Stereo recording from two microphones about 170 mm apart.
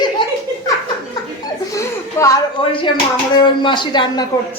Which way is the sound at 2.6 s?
30° left (ahead or behind).